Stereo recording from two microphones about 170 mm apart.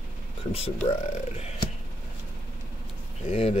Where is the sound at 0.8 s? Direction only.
40° left (ahead or behind).